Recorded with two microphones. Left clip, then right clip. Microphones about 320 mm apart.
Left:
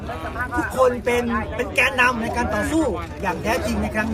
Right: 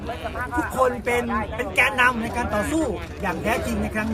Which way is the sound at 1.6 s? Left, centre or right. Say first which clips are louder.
Left 1 dB; centre.